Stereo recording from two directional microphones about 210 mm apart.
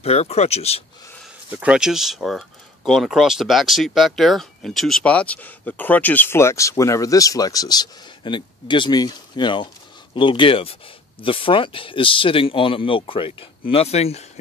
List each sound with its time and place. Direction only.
0.0 s speech: 30° left (ahead or behind)
1.6 s speech: 5° right (ahead or behind); by 14.4 s 30° left (ahead or behind)